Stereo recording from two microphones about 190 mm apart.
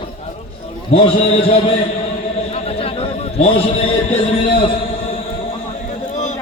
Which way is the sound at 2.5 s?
30° left (ahead or behind).